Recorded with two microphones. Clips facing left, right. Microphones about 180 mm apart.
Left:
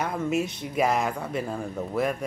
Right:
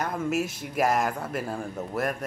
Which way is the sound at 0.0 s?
5° right (ahead or behind).